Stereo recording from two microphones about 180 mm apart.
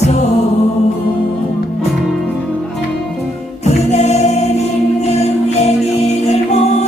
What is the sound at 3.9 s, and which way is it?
Music, 40° left (ahead or behind).